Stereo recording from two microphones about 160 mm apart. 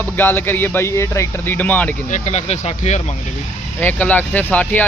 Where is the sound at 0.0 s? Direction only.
10° left (ahead or behind).